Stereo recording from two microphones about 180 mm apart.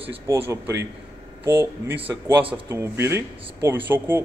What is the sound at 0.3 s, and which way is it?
Speech, 15° right (ahead or behind).